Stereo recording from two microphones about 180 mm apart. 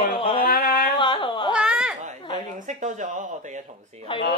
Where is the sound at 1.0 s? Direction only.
30° left (ahead or behind).